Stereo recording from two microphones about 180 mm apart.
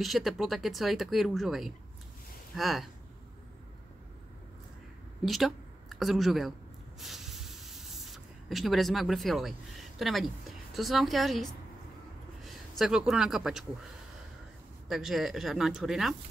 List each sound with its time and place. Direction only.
0.0 s speech: centre (ahead or behind)
5.2 s speech: centre (ahead or behind)
7.0 s spray: centre (ahead or behind)
12.4 s speech: centre (ahead or behind)
14.9 s speech: centre (ahead or behind)